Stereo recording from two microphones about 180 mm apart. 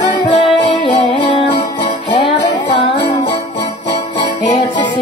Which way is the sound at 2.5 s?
25° left (ahead or behind).